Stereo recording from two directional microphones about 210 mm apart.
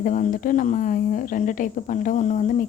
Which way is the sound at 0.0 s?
40° left (ahead or behind).